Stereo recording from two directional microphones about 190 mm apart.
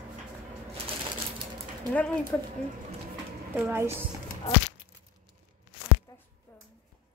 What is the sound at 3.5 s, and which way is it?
Speech, 10° right (ahead or behind).